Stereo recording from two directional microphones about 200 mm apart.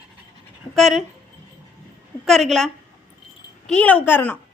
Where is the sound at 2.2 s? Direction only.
Centre (ahead or behind).